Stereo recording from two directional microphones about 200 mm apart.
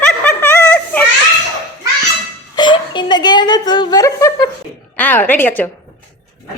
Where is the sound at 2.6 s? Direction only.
25° left (ahead or behind).